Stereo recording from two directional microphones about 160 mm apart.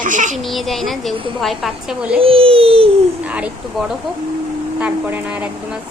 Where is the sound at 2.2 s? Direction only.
35° right (ahead or behind).